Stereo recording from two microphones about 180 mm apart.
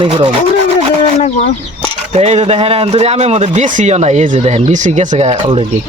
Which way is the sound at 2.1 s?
35° right (ahead or behind).